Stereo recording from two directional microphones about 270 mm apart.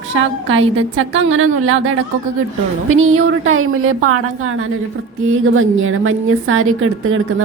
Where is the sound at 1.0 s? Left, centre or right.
Right.